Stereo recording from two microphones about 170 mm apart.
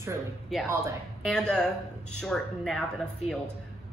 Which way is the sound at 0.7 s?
15° right (ahead or behind).